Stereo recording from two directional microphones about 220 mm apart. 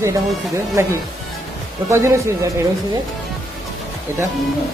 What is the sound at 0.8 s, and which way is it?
Speech, 10° right (ahead or behind).